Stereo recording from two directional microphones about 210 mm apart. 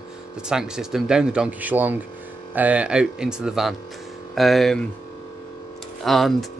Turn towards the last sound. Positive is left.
turn(degrees=0)  # may be behind; listen again after turning